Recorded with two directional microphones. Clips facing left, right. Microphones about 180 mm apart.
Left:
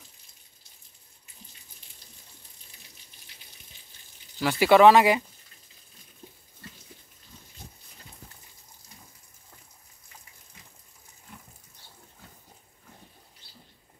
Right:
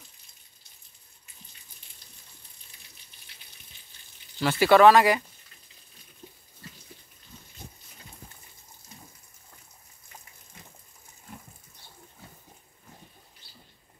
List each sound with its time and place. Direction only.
4.4 s speech: 15° left (ahead or behind)